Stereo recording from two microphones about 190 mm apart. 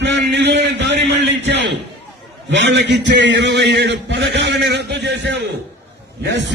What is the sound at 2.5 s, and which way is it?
A man's voice, 70° right (ahead or behind).